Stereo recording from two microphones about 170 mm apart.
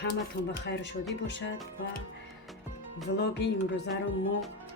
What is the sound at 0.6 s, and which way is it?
Speech, 90° left.